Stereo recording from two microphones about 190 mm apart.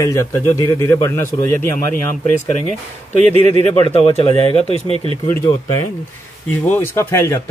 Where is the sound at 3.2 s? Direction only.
35° right (ahead or behind).